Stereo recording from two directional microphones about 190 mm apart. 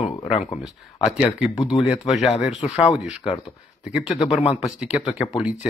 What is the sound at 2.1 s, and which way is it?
Speech, centre (ahead or behind).